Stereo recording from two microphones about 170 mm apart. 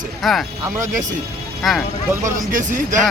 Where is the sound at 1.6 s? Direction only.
Centre (ahead or behind).